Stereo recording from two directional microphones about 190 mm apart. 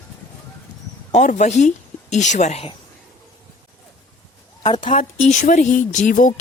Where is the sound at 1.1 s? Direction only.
40° left (ahead or behind).